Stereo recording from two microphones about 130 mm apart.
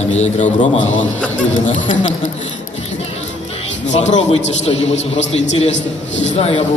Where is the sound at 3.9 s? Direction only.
65° left (ahead or behind).